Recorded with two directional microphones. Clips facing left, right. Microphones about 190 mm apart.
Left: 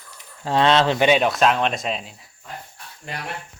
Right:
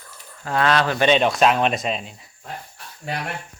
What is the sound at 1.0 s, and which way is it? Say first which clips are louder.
Speech: right 4 dB; 5° left (ahead or behind).